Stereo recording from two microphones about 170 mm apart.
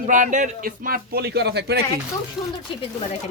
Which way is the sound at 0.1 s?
50° right (ahead or behind).